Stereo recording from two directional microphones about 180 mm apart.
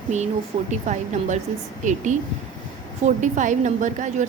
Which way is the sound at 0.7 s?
40° right (ahead or behind).